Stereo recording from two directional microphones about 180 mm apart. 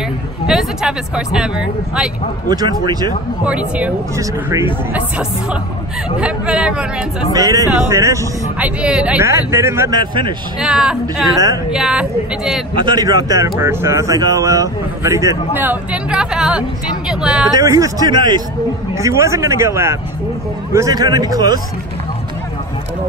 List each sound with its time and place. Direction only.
0.5 s speech: 5° right (ahead or behind)
2.5 s a man's voice: 20° right (ahead or behind)
3.4 s speech: 5° right (ahead or behind)
6.1 s speech: 5° right (ahead or behind)
7.3 s speech: 20° right (ahead or behind)
10.6 s speech: 5° right (ahead or behind)
11.3 s a man's voice: 20° right (ahead or behind)
11.7 s speech: 5° right (ahead or behind)
12.8 s speech: 20° right (ahead or behind); by 17.5 s 5° right (ahead or behind)
17.6 s a man's voice: 20° right (ahead or behind)